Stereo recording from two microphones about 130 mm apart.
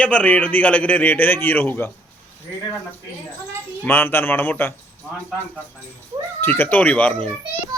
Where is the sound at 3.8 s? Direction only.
15° left (ahead or behind).